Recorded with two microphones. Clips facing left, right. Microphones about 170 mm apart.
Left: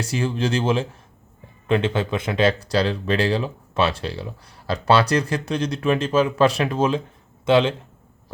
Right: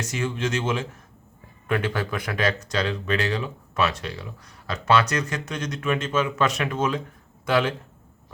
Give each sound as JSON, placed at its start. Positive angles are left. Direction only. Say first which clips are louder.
{"t": 0.0, "sound": "speech", "louder": "left 4 dB", "side_deg": 30}